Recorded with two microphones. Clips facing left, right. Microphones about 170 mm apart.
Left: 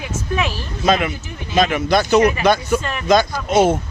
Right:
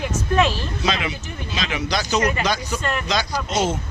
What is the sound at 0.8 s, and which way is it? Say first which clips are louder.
Speech: left 8 dB; 50° left (ahead or behind).